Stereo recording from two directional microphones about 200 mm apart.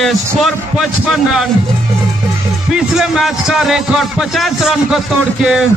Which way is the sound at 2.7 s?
Centre (ahead or behind).